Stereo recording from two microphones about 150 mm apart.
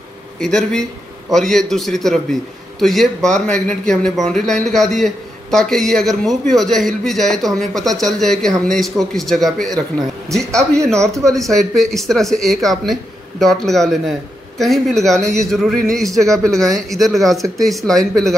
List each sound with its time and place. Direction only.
0.4 s a man's voice: 5° left (ahead or behind)
11.2 s a man's voice: centre (ahead or behind)